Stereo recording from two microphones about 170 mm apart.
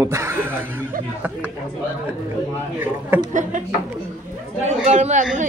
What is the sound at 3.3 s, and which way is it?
Speech, 45° right (ahead or behind).